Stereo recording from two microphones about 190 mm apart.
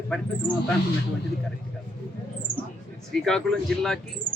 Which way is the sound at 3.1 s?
5° left (ahead or behind).